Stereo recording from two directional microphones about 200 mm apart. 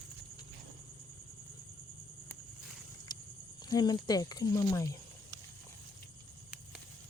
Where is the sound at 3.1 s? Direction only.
20° left (ahead or behind).